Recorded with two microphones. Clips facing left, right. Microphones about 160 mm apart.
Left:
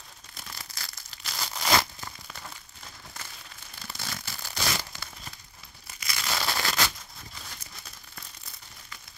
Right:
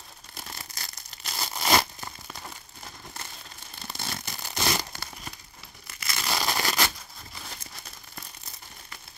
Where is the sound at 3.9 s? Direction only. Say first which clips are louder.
Right 3 dB; 25° right (ahead or behind).